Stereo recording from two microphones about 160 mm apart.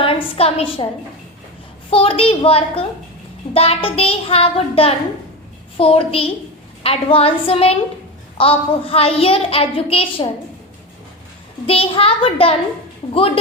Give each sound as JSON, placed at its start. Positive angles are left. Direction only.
{"t": 0.0, "sound": "a sound", "side_deg": 35}
{"t": 1.9, "sound": "a woman's voice", "side_deg": 35}
{"t": 11.6, "sound": "a woman's voice", "side_deg": 35}